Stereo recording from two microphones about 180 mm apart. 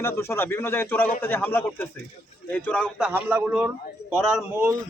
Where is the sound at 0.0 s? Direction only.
15° left (ahead or behind).